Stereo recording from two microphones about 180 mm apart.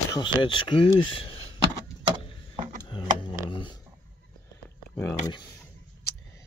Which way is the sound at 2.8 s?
25° left (ahead or behind).